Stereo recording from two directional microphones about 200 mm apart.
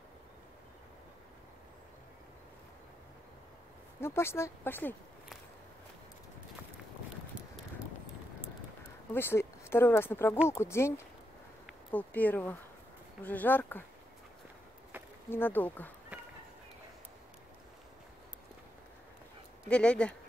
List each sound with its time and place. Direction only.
4.0 s speech: 10° left (ahead or behind)
9.1 s speech: 10° left (ahead or behind)
15.2 s speech: 10° left (ahead or behind)
19.7 s speech: 5° left (ahead or behind)